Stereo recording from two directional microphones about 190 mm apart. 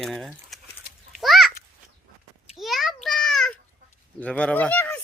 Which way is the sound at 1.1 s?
Centre (ahead or behind).